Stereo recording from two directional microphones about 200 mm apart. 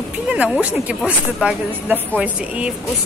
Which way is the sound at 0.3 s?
5° right (ahead or behind).